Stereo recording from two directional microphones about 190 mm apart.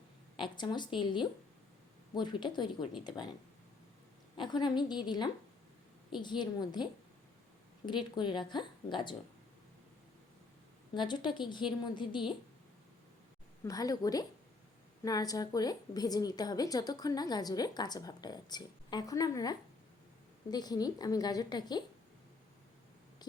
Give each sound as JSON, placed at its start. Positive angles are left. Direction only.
{"t": 0.3, "sound": "a woman's voice", "side_deg": 25}
{"t": 4.4, "sound": "a woman's voice", "side_deg": 25}
{"t": 7.9, "sound": "a woman's voice", "side_deg": 25}
{"t": 10.9, "sound": "a woman's voice", "side_deg": 25}
{"t": 13.7, "sound": "a woman's voice", "side_deg": 20}